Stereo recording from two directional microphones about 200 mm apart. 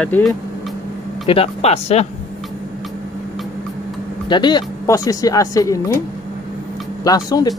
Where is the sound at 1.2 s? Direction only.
30° left (ahead or behind).